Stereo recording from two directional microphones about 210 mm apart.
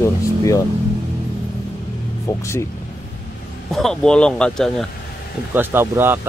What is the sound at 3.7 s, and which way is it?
Speech, centre (ahead or behind).